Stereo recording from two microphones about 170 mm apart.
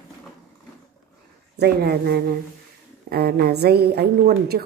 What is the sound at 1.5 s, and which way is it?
A woman's voice, 70° right (ahead or behind).